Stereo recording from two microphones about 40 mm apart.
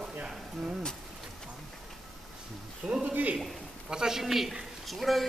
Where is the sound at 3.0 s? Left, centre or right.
Right.